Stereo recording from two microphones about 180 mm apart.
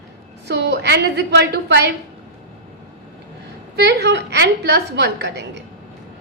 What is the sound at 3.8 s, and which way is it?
A woman's voice, 70° right (ahead or behind).